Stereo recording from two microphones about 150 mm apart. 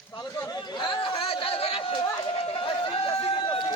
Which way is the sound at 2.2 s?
40° left (ahead or behind).